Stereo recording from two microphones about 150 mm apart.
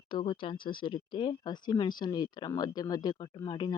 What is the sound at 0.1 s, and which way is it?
Speech, 30° left (ahead or behind).